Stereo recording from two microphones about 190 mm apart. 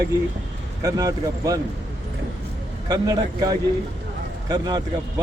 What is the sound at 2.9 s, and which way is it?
Speech, 20° right (ahead or behind).